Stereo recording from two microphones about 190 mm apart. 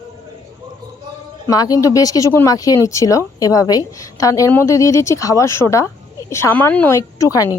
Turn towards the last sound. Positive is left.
turn(degrees=15)  # may be behind; listen again after turning